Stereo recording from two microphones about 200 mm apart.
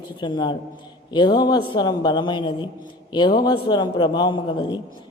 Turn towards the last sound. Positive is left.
turn(degrees=25)  # may be behind; listen again after turning